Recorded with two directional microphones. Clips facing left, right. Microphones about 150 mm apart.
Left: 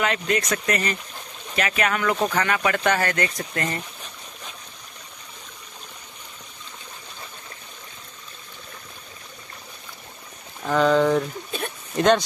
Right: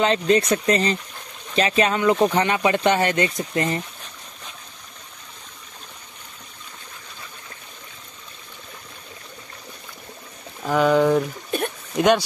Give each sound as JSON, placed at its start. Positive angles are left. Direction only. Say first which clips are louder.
{"t": 0.0, "sound": "speech", "louder": "right 5 dB", "side_deg": -30}
{"t": 10.6, "sound": "speech", "louder": "right 1 dB", "side_deg": -10}